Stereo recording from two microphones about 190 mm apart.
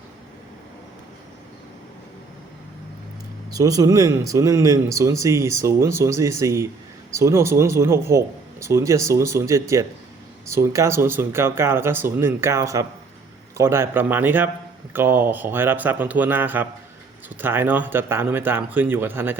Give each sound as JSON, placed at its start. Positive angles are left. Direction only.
{"t": 3.5, "sound": "speech", "side_deg": -20}